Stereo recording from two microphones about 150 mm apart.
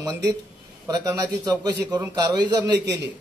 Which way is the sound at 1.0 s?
20° right (ahead or behind).